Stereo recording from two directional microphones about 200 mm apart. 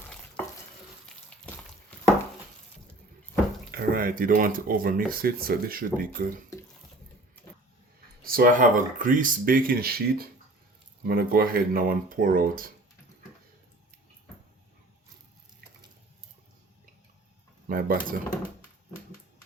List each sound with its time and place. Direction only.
3.7 s speech: 45° right (ahead or behind)
8.2 s speech: 45° right (ahead or behind)
17.7 s speech: 45° right (ahead or behind)